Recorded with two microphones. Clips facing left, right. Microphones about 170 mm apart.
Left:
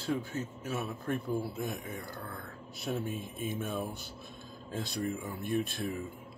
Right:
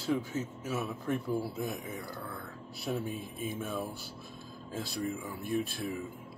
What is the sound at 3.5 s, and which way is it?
Speech, 20° left (ahead or behind).